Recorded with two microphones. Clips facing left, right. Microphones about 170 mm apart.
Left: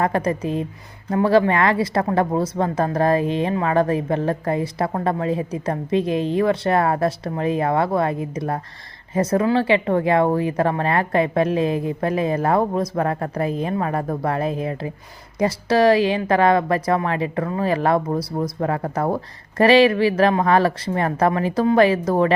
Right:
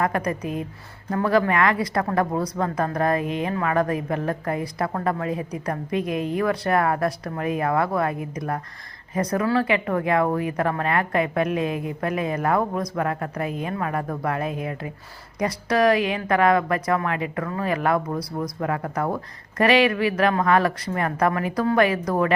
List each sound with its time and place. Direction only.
0.0 s a woman's voice: 30° left (ahead or behind)